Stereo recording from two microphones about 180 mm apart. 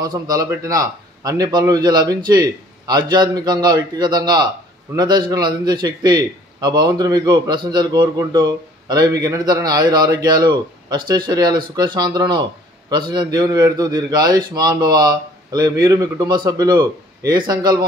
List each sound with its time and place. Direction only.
0.0 s a man's voice: 20° right (ahead or behind)